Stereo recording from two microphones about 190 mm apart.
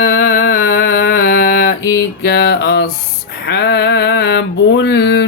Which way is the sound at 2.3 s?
60° left (ahead or behind).